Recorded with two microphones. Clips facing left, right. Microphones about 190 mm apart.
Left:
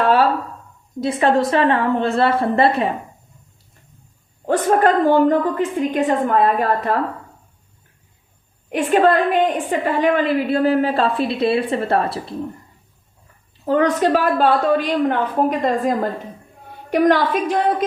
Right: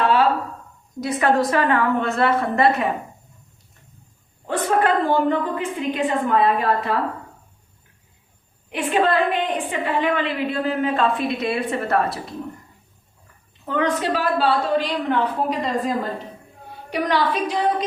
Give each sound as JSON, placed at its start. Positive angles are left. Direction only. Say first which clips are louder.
{"t": 0.0, "sound": "a sound", "louder": "left 3 dB", "side_deg": 45}
{"t": 1.0, "sound": "a woman's voice", "louder": "left 2 dB", "side_deg": 25}
{"t": 4.4, "sound": "a woman's voice", "louder": "left 4 dB", "side_deg": 45}
{"t": 8.7, "sound": "a woman's voice", "louder": "left 5 dB", "side_deg": 45}
{"t": 13.7, "sound": "a woman's voice", "louder": "left 6 dB", "side_deg": 40}